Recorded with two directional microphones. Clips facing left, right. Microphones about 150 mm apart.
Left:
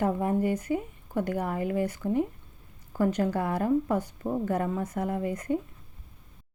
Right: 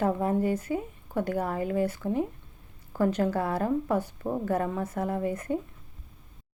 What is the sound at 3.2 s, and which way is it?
A woman's voice, 45° right (ahead or behind).